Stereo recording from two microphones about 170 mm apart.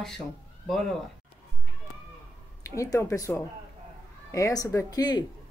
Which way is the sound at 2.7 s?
20° left (ahead or behind).